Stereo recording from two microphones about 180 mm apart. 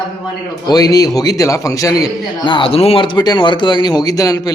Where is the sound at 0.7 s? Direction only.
20° left (ahead or behind).